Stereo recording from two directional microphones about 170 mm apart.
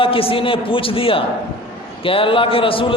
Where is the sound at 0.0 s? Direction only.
30° left (ahead or behind).